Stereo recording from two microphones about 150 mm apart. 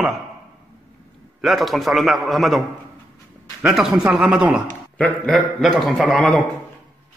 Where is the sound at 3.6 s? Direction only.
5° right (ahead or behind).